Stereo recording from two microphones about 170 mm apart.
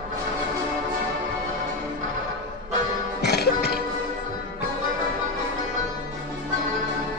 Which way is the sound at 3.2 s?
70° left (ahead or behind).